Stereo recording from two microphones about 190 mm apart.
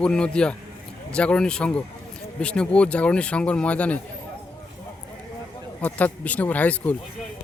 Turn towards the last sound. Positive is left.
turn(degrees=10)  # may be behind; listen again after turning